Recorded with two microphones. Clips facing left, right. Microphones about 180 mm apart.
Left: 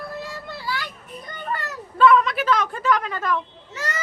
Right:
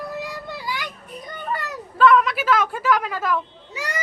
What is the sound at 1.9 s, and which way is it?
Speech, centre (ahead or behind).